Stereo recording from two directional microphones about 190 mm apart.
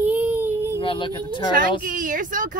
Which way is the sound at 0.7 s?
25° left (ahead or behind).